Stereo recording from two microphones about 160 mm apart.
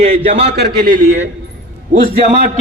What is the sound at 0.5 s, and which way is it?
Speech, 80° right.